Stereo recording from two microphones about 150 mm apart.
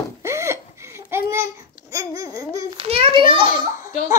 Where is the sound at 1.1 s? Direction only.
15° right (ahead or behind).